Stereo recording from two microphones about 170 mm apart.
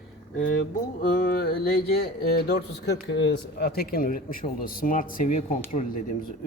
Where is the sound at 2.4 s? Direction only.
80° left.